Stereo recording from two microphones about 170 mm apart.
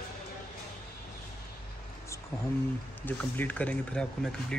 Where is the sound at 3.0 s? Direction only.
10° left (ahead or behind).